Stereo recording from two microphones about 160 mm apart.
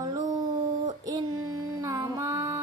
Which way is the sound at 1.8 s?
20° right (ahead or behind).